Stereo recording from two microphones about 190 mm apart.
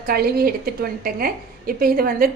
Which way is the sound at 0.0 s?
50° right (ahead or behind).